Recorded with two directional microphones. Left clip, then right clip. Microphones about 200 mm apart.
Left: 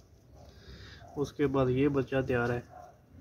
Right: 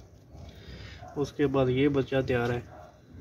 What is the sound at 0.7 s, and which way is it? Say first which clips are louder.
Speech: right 4 dB; 5° right (ahead or behind).